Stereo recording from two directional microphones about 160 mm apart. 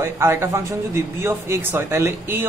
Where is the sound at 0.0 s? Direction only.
15° right (ahead or behind).